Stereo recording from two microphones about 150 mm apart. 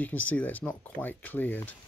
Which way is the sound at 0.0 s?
10° left (ahead or behind).